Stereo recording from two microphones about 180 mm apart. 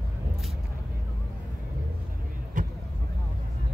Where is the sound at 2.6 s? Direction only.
45° right (ahead or behind).